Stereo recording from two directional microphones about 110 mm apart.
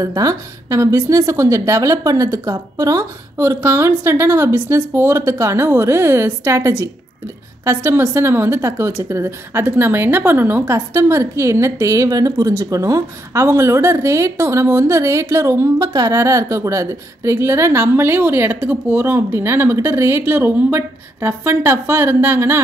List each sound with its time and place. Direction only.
0.0 s a woman's voice: 30° right (ahead or behind)